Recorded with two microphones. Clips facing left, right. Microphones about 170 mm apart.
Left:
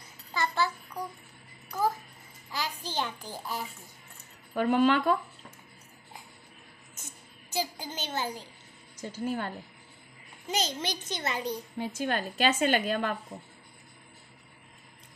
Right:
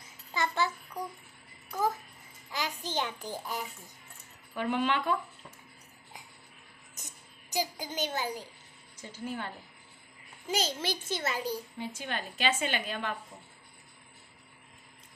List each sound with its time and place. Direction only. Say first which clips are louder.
0.3 s a sound: left 1 dB; 20° right (ahead or behind)
2.5 s a sound: even; 20° right (ahead or behind)
4.6 s a woman's voice: left 6 dB; 45° left (ahead or behind)
7.5 s a child's voice: even; 15° right (ahead or behind)
9.0 s a woman's voice: left 5 dB; 40° left (ahead or behind)
10.4 s a child's voice: even; 5° right (ahead or behind)
11.8 s a woman's voice: left 6 dB; 45° left (ahead or behind)